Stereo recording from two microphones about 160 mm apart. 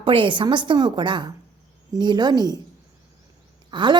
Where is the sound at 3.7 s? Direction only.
30° right (ahead or behind).